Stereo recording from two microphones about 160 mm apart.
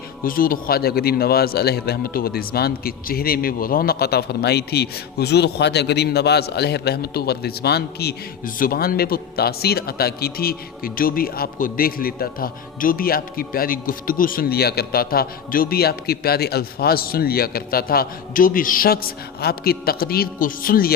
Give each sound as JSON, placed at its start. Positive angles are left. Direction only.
{"t": 0.3, "sound": "a man's voice", "side_deg": 60}